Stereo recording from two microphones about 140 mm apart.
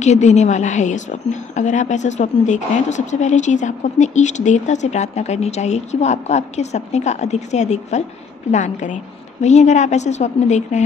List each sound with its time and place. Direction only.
0.0 s a woman's voice: 55° left (ahead or behind)